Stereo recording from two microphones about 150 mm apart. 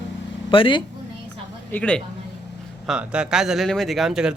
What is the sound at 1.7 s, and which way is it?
Speech, 10° left (ahead or behind).